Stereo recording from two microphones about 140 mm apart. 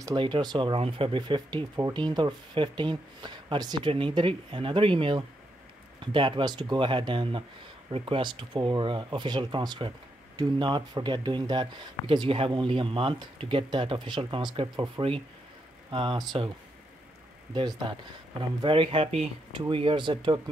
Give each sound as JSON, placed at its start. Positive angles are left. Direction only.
{"t": 0.0, "sound": "speech", "side_deg": -35}
{"t": 17.6, "sound": "speech", "side_deg": -30}